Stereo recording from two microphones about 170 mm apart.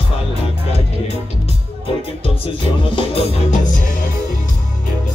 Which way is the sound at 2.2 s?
35° left (ahead or behind).